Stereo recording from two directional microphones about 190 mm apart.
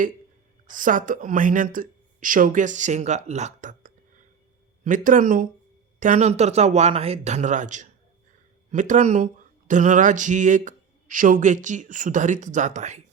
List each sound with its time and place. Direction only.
0.7 s speech: 45° right (ahead or behind)
5.0 s speech: 45° right (ahead or behind)